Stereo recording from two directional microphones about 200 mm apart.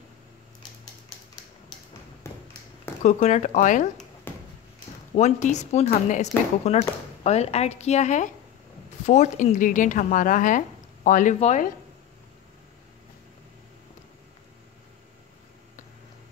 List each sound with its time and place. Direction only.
3.0 s speech: 35° left (ahead or behind)
4.3 s a sound: 10° left (ahead or behind)
5.1 s speech: 35° left (ahead or behind)